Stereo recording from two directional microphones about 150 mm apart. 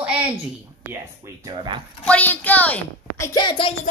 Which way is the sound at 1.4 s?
30° right (ahead or behind).